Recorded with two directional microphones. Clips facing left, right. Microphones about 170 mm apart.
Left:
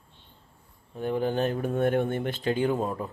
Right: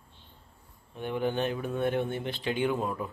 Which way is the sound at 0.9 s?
40° left (ahead or behind).